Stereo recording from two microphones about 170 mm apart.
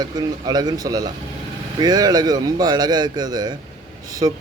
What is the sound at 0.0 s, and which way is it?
A man's voice, 25° right (ahead or behind).